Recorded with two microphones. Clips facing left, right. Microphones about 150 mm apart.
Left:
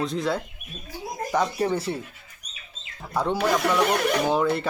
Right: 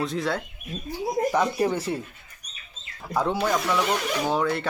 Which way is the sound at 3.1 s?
Centre (ahead or behind).